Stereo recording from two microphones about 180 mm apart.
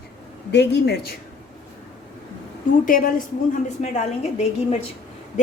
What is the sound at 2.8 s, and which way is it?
Speech, 50° left (ahead or behind).